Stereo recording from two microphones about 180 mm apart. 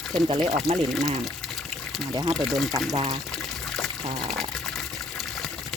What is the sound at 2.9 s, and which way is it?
Speech, 30° right (ahead or behind).